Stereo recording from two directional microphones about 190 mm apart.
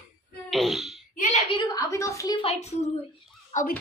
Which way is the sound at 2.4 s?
35° left (ahead or behind).